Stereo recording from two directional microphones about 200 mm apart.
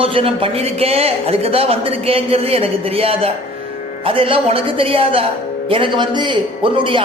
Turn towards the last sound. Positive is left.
turn(degrees=-25)  # may be behind; listen again after turning